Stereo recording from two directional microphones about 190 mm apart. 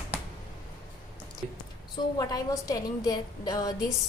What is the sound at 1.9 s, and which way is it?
A woman's voice, 20° left (ahead or behind).